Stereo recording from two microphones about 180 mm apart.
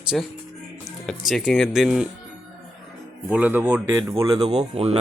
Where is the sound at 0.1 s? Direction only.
Centre (ahead or behind).